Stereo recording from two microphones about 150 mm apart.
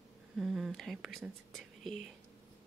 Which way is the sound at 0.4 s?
Centre (ahead or behind).